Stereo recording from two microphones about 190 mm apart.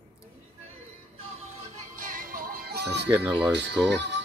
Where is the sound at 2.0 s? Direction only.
45° right (ahead or behind).